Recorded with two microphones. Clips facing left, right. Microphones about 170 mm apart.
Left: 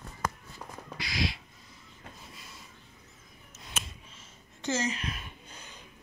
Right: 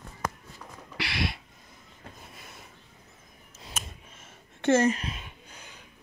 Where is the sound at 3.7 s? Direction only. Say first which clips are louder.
Right 1 dB; 55° right (ahead or behind).